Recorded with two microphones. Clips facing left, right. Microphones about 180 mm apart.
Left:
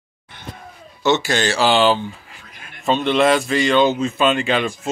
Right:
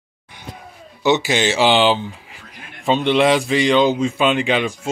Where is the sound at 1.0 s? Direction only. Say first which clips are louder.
Right 1 dB; 15° right (ahead or behind).